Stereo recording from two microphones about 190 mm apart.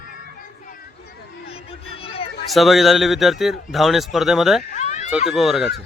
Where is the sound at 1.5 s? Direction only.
30° left (ahead or behind).